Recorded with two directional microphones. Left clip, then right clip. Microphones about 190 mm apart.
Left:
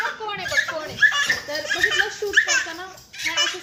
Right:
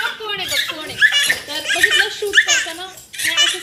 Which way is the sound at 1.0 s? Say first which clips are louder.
Right 4 dB; 20° left (ahead or behind).